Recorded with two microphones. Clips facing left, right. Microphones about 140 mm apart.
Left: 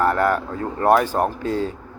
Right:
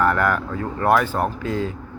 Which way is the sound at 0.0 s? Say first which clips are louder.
Left 1 dB; 35° left (ahead or behind).